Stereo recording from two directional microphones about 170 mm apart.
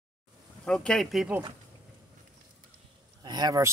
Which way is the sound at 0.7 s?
5° left (ahead or behind).